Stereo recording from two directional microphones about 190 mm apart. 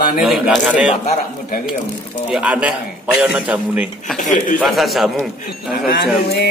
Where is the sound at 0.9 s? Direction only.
40° left (ahead or behind).